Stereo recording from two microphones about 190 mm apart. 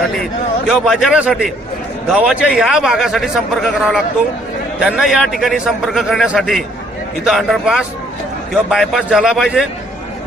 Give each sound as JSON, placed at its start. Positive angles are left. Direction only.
{"t": 0.7, "sound": "a man's voice", "side_deg": 0}